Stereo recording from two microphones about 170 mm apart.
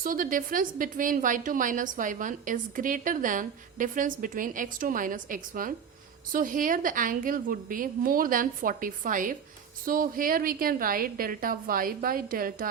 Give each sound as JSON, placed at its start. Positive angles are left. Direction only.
{"t": 0.0, "sound": "a woman's voice", "side_deg": -55}